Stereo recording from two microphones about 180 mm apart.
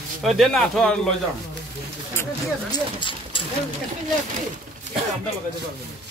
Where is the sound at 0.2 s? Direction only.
Centre (ahead or behind).